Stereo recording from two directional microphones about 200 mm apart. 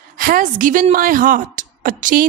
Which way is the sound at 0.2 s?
45° right (ahead or behind).